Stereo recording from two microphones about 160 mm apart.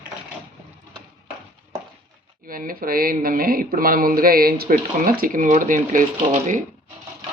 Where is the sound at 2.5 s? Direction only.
60° right (ahead or behind).